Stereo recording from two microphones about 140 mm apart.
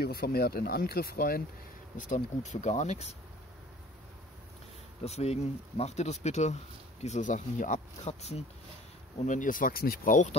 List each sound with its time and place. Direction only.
0.0 s speech: 90° left
2.0 s speech: 60° left (ahead or behind)
5.0 s speech: 50° left (ahead or behind)
9.2 s speech: 65° left (ahead or behind)